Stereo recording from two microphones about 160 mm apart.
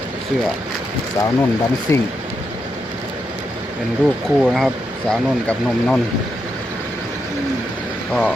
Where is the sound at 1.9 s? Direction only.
15° left (ahead or behind).